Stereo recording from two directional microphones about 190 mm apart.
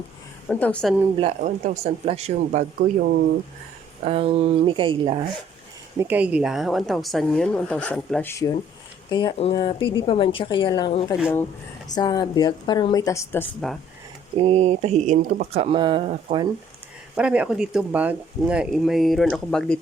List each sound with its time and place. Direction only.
0.5 s speech: 5° left (ahead or behind)
1.2 s speech: 40° right (ahead or behind)
4.0 s speech: 30° right (ahead or behind)
6.0 s a woman's voice: 10° right (ahead or behind)
14.3 s speech: 30° right (ahead or behind)
17.2 s speech: 5° right (ahead or behind)